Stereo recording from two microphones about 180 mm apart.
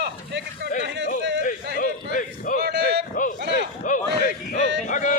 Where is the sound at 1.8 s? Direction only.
50° left (ahead or behind).